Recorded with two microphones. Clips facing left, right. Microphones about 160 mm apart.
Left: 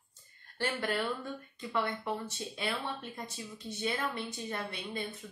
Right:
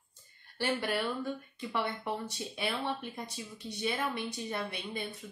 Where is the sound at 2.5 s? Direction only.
15° right (ahead or behind).